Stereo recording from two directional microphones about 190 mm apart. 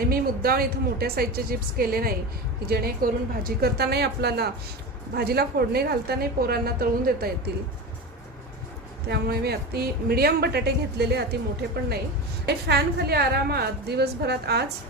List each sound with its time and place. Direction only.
0.1 s a woman's voice: 50° right (ahead or behind)
9.0 s a woman's voice: 55° right (ahead or behind)
12.6 s a woman's voice: 60° right (ahead or behind)